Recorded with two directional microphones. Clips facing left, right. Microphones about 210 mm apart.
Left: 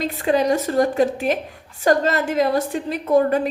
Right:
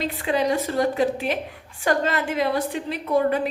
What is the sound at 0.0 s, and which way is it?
A woman's voice, 45° left (ahead or behind).